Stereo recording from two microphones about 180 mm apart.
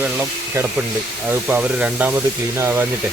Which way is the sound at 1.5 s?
10° right (ahead or behind).